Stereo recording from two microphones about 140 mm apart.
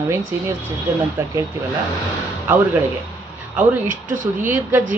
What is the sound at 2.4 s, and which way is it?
Speech, 15° right (ahead or behind).